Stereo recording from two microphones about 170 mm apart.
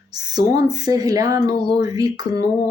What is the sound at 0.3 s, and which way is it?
Speech, 25° right (ahead or behind).